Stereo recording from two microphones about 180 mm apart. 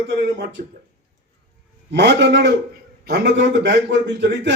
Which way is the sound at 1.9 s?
75° right (ahead or behind).